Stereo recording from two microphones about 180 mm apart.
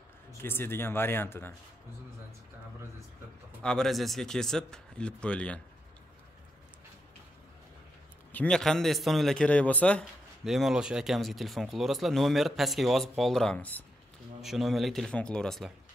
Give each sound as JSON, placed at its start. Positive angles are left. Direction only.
{"t": 0.4, "sound": "speech", "side_deg": 10}
{"t": 3.6, "sound": "a man's voice", "side_deg": 0}
{"t": 8.3, "sound": "a man's voice", "side_deg": 5}